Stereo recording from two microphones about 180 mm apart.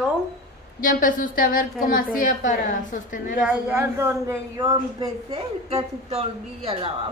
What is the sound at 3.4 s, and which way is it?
Speech, 15° right (ahead or behind).